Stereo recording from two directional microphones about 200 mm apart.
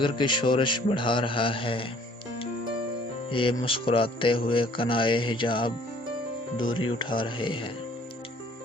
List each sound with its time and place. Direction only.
0.0 s speech: 25° left (ahead or behind)
3.2 s speech: 25° left (ahead or behind)